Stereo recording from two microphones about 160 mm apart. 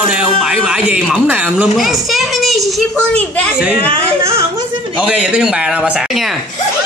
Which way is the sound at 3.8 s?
35° right (ahead or behind).